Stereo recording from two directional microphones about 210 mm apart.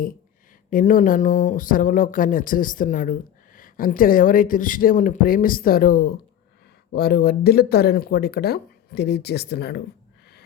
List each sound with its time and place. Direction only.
0.7 s speech: 40° left (ahead or behind)